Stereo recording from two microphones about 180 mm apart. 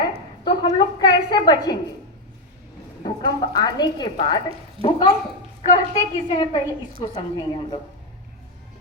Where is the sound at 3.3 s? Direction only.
20° left (ahead or behind).